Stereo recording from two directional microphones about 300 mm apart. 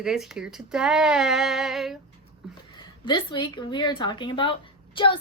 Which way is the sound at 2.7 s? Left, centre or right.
Centre.